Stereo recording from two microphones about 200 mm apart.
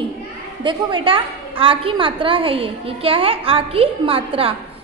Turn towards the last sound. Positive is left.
turn(degrees=-30)  # may be behind; listen again after turning